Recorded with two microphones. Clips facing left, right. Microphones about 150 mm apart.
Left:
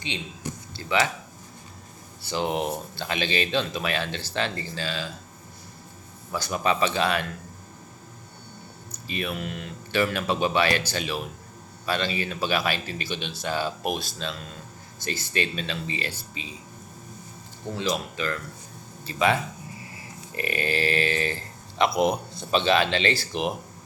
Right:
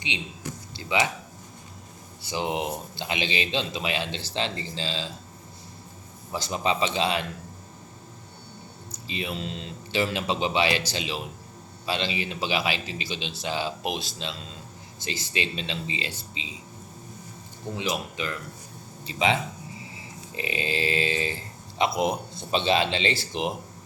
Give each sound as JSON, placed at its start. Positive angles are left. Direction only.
{"t": 0.1, "sound": "speech", "side_deg": -20}
{"t": 2.3, "sound": "speech", "side_deg": -15}
{"t": 6.3, "sound": "speech", "side_deg": -25}
{"t": 8.9, "sound": "speech", "side_deg": -20}
{"t": 11.9, "sound": "speech", "side_deg": -20}
{"t": 12.5, "sound": "speech", "side_deg": 55}
{"t": 15.3, "sound": "speech", "side_deg": -20}
{"t": 17.7, "sound": "speech", "side_deg": -15}